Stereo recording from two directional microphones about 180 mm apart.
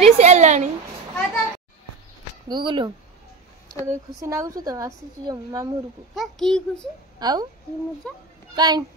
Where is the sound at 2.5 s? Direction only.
25° right (ahead or behind).